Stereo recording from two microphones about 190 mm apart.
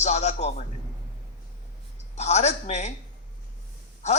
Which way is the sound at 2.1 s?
35° left (ahead or behind).